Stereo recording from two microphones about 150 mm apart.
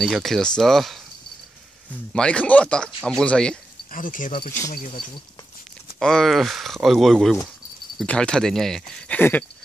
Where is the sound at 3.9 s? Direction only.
65° left (ahead or behind).